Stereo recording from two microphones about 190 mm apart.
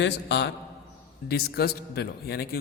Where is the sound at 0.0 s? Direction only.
65° left (ahead or behind).